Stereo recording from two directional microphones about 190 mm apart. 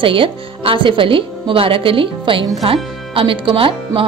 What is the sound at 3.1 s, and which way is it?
Speech, 25° right (ahead or behind).